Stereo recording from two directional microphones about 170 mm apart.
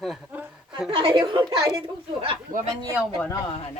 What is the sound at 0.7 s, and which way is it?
Speech, 30° right (ahead or behind).